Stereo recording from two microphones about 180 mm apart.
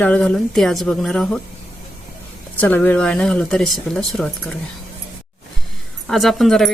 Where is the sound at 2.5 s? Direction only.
10° left (ahead or behind).